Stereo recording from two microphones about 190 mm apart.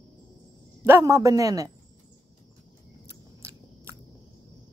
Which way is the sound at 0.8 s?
15° right (ahead or behind).